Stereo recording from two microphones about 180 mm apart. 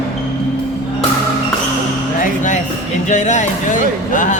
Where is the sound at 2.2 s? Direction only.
45° left (ahead or behind).